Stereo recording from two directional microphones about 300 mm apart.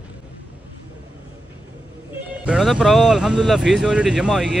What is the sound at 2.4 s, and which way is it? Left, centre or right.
Speech, centre.